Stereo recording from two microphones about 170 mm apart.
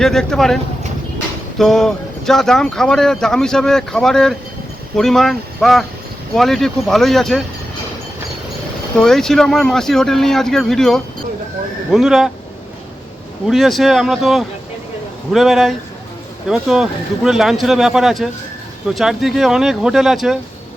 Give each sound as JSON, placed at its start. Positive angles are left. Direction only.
{"t": 0.0, "sound": "speech", "side_deg": 5}
{"t": 9.0, "sound": "speech", "side_deg": 5}
{"t": 13.5, "sound": "speech", "side_deg": 0}